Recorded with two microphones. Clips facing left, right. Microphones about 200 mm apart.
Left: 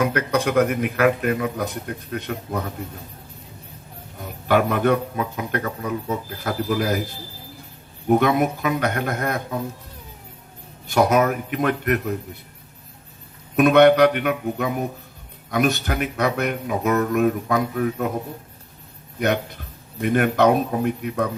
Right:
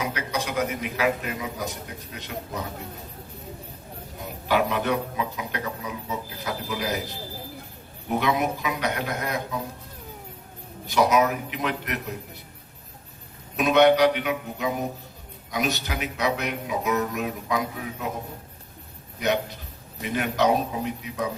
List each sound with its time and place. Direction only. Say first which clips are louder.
0.0 s a man's voice: left 8 dB; 55° left (ahead or behind)
4.4 s speech: left 5 dB; 50° left (ahead or behind)
8.0 s speech: left 6 dB; 50° left (ahead or behind)
10.8 s speech: left 3 dB; 50° left (ahead or behind)
13.6 s a man's voice: left 5 dB; 55° left (ahead or behind)
20.0 s a man's voice: left 6 dB; 55° left (ahead or behind)